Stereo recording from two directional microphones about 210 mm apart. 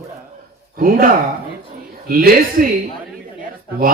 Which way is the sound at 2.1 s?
45° right (ahead or behind).